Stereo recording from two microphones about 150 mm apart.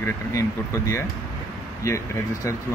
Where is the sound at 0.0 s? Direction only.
20° left (ahead or behind).